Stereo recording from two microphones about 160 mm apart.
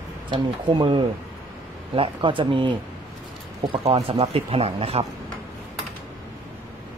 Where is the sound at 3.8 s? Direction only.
40° right (ahead or behind).